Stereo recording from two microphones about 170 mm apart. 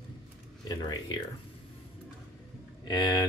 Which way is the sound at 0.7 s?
25° left (ahead or behind).